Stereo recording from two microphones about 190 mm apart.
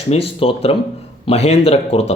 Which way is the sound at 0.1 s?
30° left (ahead or behind).